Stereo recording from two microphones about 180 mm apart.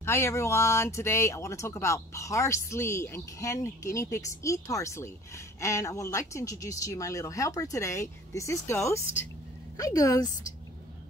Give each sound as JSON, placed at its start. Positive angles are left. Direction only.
{"t": 0.0, "sound": "a woman's voice", "side_deg": 15}